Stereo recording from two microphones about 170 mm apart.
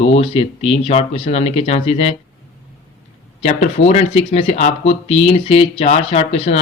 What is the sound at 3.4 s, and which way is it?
Speech, 40° left (ahead or behind).